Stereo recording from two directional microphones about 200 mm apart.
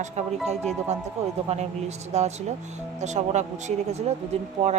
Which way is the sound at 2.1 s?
35° right (ahead or behind).